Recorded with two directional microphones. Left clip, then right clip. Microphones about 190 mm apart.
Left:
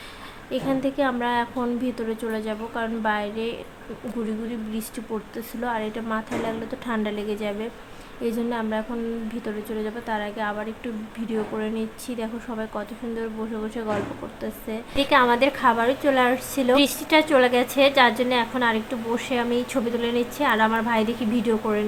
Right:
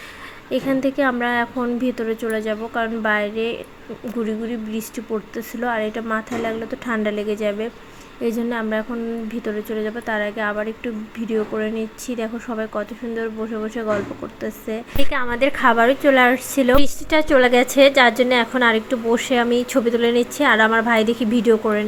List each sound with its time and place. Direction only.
0.5 s a woman's voice: 20° right (ahead or behind)
4.7 s a woman's voice: 15° right (ahead or behind)